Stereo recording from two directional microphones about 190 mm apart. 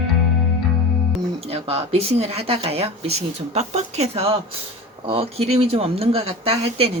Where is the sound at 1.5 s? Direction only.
30° right (ahead or behind).